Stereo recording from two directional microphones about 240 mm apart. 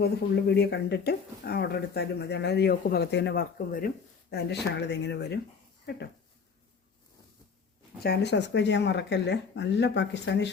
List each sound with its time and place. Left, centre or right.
0.0 s speech: left
7.9 s speech: left